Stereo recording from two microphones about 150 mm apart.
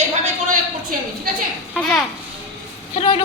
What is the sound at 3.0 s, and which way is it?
Speech, 40° left (ahead or behind).